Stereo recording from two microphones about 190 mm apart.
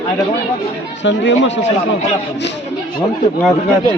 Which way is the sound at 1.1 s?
70° left (ahead or behind).